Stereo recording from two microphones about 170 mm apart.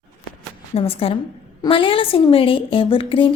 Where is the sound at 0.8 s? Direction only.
35° left (ahead or behind).